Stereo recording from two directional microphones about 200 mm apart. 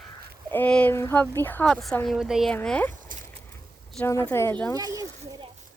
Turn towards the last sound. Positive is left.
turn(degrees=-20)  # may be behind; listen again after turning